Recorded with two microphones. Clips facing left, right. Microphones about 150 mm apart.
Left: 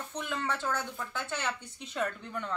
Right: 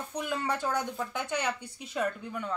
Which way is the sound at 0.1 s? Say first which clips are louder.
Right 3 dB; 10° right (ahead or behind).